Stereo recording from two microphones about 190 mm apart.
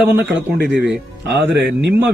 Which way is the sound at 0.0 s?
10° right (ahead or behind).